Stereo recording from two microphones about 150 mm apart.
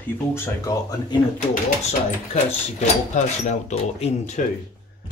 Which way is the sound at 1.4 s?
50° left (ahead or behind).